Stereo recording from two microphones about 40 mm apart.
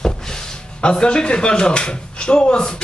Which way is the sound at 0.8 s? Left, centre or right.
Left.